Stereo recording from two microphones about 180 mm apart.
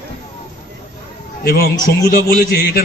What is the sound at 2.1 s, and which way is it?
Speech, 50° left (ahead or behind).